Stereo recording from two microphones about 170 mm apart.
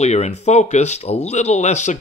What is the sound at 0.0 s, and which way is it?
Speech, 40° left (ahead or behind).